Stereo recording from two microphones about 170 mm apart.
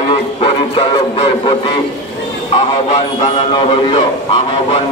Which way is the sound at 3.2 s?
30° left (ahead or behind).